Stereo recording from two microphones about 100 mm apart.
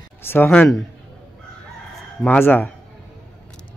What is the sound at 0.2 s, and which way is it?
Speech, 25° left (ahead or behind).